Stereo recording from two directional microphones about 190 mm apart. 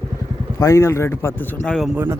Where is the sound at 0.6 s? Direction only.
15° left (ahead or behind).